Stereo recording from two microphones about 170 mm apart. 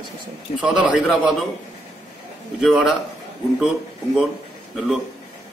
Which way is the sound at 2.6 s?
Centre (ahead or behind).